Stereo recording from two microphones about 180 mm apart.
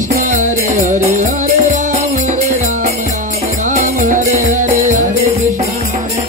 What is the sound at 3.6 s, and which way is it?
Music, 45° right (ahead or behind).